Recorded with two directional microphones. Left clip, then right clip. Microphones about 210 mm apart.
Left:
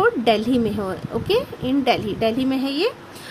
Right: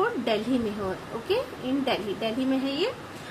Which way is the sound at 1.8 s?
50° left (ahead or behind).